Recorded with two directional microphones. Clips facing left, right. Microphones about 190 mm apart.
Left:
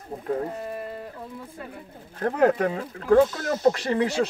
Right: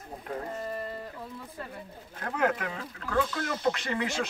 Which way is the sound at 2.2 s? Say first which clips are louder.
Left 8 dB; 35° left (ahead or behind).